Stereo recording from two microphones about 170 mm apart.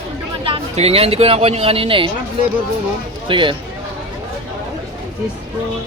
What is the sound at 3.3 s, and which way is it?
Speech, 30° right (ahead or behind).